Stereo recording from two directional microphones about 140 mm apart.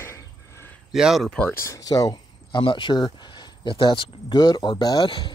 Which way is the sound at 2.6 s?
35° left (ahead or behind).